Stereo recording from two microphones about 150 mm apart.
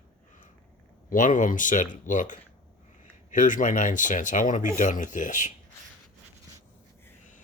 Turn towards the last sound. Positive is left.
turn(degrees=60)  # may be behind; listen again after turning